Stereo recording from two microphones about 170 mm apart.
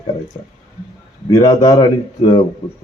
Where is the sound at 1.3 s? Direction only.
20° left (ahead or behind).